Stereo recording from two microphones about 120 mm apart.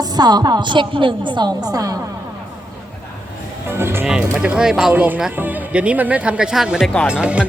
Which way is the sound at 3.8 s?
20° right (ahead or behind).